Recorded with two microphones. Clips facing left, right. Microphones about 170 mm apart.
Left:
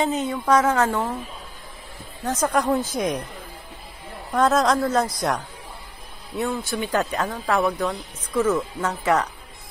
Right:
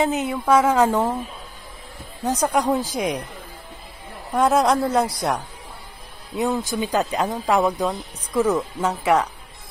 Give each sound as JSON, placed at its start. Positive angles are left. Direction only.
{"t": 0.0, "sound": "speech", "side_deg": -5}
{"t": 2.2, "sound": "speech", "side_deg": -15}
{"t": 4.3, "sound": "speech", "side_deg": -10}